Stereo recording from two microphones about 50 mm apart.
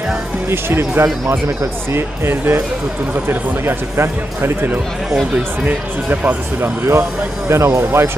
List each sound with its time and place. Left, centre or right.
0.5 s speech: right
5.7 s speech: right
6.6 s speech: right